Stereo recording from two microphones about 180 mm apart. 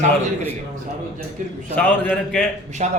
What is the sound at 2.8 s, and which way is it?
Speech, 40° right (ahead or behind).